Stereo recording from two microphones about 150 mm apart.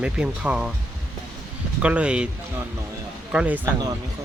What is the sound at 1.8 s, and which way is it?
Speech, 10° right (ahead or behind).